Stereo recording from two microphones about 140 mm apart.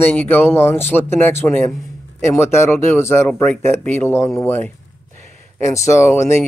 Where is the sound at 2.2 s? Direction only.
20° left (ahead or behind).